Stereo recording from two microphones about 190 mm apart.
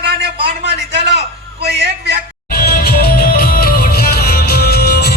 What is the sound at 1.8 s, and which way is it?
Speech, 65° right (ahead or behind).